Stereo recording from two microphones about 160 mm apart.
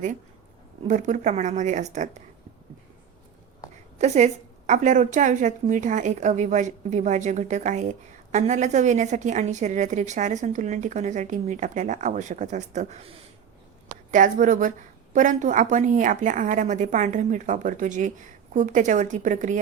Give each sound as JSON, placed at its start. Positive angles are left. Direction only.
{"t": 0.9, "sound": "a woman's voice", "side_deg": -50}
{"t": 3.9, "sound": "a woman's voice", "side_deg": -45}
{"t": 14.1, "sound": "a woman's voice", "side_deg": -55}